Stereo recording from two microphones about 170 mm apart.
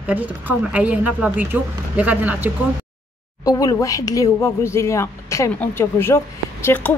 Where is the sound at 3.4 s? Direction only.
20° left (ahead or behind).